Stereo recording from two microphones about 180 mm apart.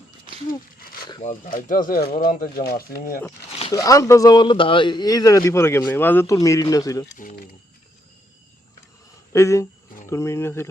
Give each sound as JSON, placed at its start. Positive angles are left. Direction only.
{"t": 0.8, "sound": "a sound", "side_deg": 55}
{"t": 1.2, "sound": "speech", "side_deg": 45}
{"t": 3.7, "sound": "speech", "side_deg": 20}
{"t": 7.2, "sound": "speech", "side_deg": 50}
{"t": 9.3, "sound": "speech", "side_deg": 15}